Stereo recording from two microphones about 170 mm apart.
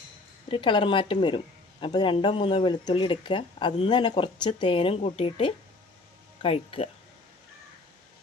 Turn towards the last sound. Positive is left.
turn(degrees=35)  # may be behind; listen again after turning